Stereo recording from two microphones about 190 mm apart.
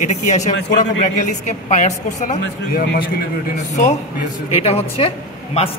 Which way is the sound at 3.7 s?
35° left (ahead or behind).